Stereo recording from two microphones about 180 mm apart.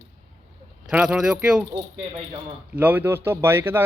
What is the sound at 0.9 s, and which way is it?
Speech, 5° right (ahead or behind).